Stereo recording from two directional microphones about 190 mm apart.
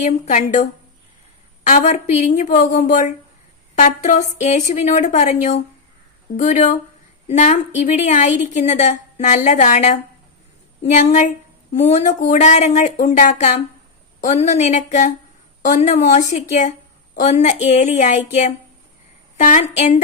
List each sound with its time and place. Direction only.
0.0 s a woman's voice: 40° left (ahead or behind)